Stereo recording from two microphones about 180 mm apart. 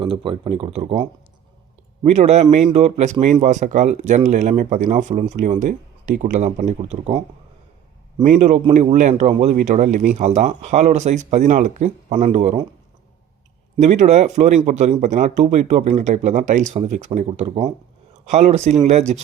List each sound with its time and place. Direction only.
0.0 s speech: 30° right (ahead or behind)
2.0 s speech: 35° right (ahead or behind)
8.4 s speech: 40° right (ahead or behind)
13.7 s speech: 40° right (ahead or behind)